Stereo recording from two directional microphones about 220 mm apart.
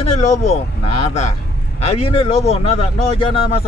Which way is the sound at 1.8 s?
25° left (ahead or behind).